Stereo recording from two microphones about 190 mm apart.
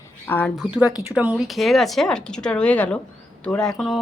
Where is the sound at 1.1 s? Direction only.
5° right (ahead or behind).